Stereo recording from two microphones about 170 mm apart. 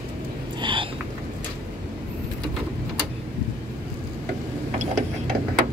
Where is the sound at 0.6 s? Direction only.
30° right (ahead or behind).